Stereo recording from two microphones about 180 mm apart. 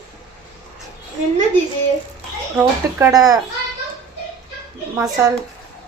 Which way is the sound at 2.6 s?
15° right (ahead or behind).